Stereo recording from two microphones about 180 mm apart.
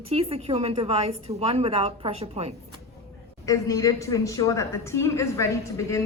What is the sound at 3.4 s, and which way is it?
A woman's voice, 20° left (ahead or behind).